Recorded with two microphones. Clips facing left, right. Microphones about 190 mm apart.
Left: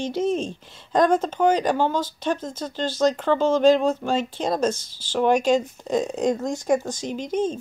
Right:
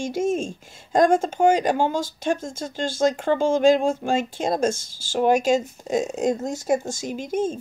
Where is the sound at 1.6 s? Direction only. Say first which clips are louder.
Even; 45° right (ahead or behind).